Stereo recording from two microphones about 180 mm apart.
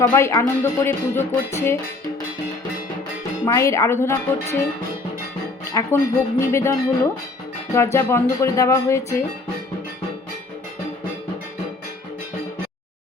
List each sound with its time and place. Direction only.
0.0 s speech: 15° left (ahead or behind)
3.4 s speech: 15° left (ahead or behind)
5.7 s speech: 15° left (ahead or behind)